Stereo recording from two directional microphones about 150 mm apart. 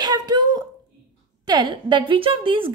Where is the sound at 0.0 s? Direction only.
25° right (ahead or behind).